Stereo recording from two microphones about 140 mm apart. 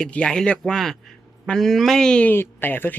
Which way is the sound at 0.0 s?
5° left (ahead or behind).